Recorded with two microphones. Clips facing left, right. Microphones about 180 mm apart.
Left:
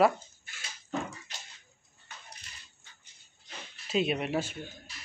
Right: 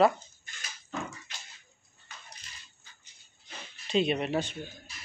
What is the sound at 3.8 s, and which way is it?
Speech, 5° left (ahead or behind).